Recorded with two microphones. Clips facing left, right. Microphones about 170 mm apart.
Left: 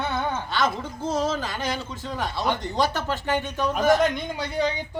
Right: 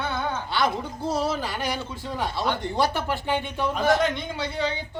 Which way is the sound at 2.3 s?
20° left (ahead or behind).